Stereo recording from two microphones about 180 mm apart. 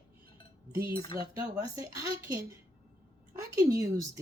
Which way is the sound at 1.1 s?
20° right (ahead or behind).